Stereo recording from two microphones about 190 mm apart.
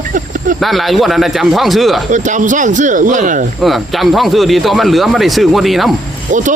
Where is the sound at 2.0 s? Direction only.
40° right (ahead or behind).